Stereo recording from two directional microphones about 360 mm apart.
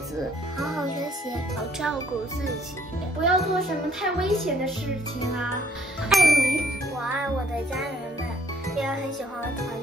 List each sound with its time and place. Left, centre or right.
0.6 s music: centre
3.3 s a child's voice: centre
6.0 s a child's voice: centre
8.6 s music: centre